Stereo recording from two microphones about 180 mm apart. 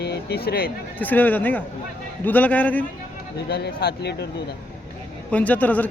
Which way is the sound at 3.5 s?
65° left (ahead or behind).